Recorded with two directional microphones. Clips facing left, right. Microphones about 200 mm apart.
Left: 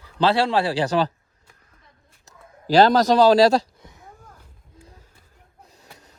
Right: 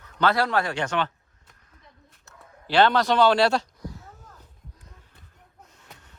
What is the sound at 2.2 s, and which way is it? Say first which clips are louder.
Speech: left 9 dB; 35° left (ahead or behind).